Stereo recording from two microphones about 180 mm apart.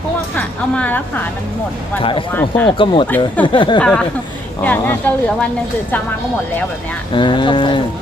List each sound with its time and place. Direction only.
0.3 s a woman's voice: 10° left (ahead or behind)
2.0 s speech: 30° left (ahead or behind)
2.3 s speech: 10° left (ahead or behind)
2.6 s speech: 25° left (ahead or behind)
3.8 s speech: 5° left (ahead or behind)
7.1 s speech: 25° left (ahead or behind)